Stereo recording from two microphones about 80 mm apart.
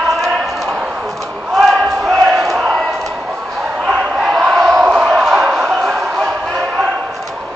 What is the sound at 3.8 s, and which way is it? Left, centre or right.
Crowd, centre.